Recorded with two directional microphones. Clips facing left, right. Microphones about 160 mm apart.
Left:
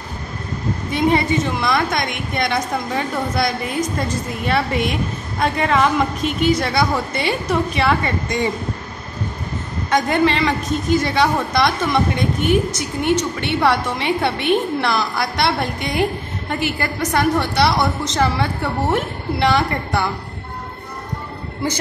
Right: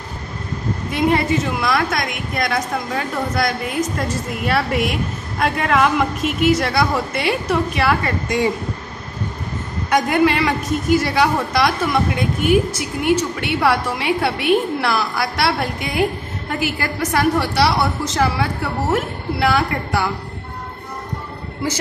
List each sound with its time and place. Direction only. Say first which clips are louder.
0.9 s a woman's voice: even; centre (ahead or behind)
9.8 s a man's voice: right 1 dB; 10° right (ahead or behind)